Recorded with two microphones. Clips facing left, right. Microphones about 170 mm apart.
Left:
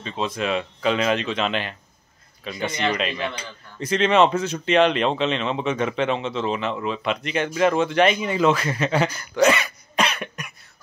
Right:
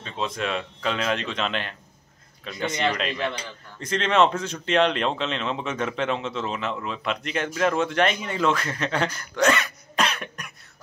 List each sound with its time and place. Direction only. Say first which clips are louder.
0.0 s speech: left 3 dB; centre (ahead or behind)